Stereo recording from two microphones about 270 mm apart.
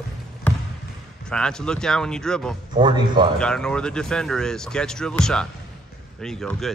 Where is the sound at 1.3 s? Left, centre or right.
Centre.